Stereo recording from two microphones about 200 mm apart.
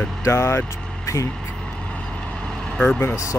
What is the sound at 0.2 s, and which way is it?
Speech, 15° left (ahead or behind).